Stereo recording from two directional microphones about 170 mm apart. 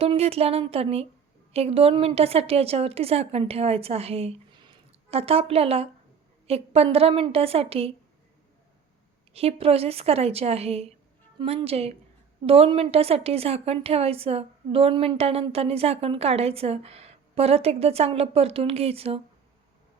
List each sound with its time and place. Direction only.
0.0 s a woman's voice: 35° right (ahead or behind)
9.3 s a woman's voice: 35° right (ahead or behind)